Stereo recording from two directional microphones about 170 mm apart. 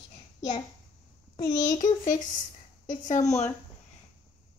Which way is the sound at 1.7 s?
45° left (ahead or behind).